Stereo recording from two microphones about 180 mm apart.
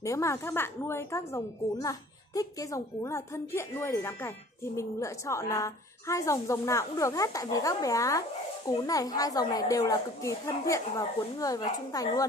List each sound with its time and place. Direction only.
0.0 s a woman's voice: 15° left (ahead or behind)